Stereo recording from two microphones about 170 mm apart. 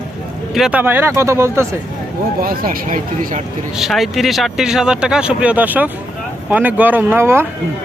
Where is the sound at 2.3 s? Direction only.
60° right (ahead or behind).